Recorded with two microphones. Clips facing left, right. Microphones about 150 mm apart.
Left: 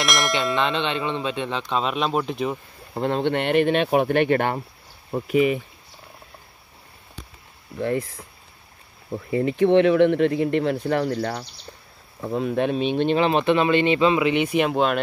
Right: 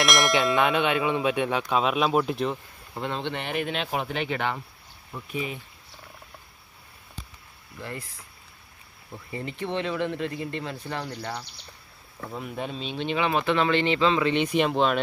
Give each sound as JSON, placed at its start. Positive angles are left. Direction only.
{"t": 0.0, "sound": "bell", "side_deg": 0}
{"t": 2.9, "sound": "speech", "side_deg": 45}
{"t": 5.1, "sound": "speech", "side_deg": 75}
{"t": 7.9, "sound": "speech", "side_deg": 90}
{"t": 9.4, "sound": "speech", "side_deg": 90}
{"t": 12.3, "sound": "speech", "side_deg": 75}
{"t": 13.3, "sound": "speech", "side_deg": 20}